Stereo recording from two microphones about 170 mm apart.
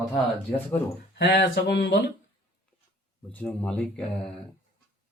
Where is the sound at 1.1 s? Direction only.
75° left (ahead or behind).